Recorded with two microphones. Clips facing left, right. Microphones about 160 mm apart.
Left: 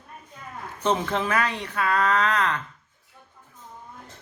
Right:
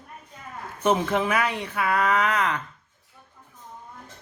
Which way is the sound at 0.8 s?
10° right (ahead or behind).